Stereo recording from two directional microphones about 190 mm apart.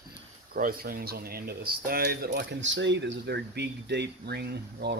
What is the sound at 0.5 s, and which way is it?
Speech, 50° right (ahead or behind).